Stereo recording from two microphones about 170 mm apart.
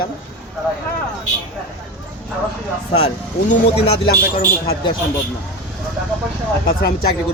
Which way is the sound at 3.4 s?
35° left (ahead or behind).